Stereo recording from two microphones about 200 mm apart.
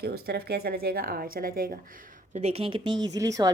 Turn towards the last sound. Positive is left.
turn(degrees=-15)  # may be behind; listen again after turning